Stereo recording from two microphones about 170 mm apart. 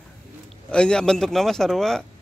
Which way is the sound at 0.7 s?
5° left (ahead or behind).